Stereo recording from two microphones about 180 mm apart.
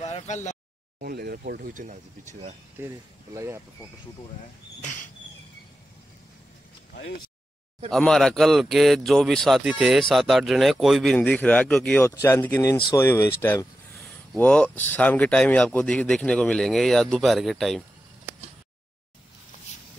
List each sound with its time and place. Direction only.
0.0 s a sound: 40° left (ahead or behind)
1.0 s speech: 60° right (ahead or behind)
2.8 s speech: 15° right (ahead or behind)
7.9 s speech: 5° left (ahead or behind)